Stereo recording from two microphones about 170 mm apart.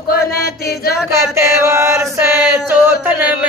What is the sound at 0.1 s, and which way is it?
Music, 65° left (ahead or behind).